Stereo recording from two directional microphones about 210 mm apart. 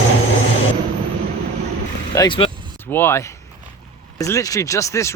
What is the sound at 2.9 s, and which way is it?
Speech, 10° left (ahead or behind).